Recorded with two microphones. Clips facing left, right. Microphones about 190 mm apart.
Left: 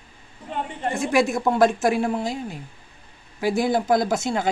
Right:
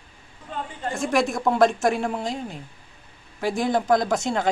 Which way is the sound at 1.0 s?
Centre (ahead or behind).